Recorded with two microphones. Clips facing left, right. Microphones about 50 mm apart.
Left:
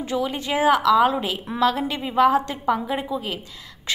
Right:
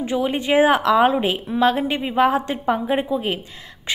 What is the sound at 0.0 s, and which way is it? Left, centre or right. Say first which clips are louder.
A woman's voice: right 3 dB; right.